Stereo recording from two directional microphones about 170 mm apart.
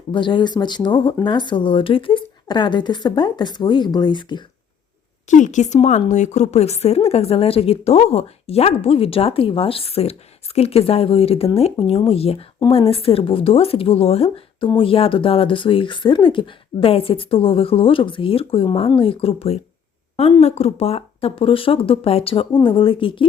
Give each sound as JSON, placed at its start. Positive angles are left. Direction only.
{"t": 0.1, "sound": "speech", "side_deg": 30}
{"t": 5.3, "sound": "a woman's voice", "side_deg": 45}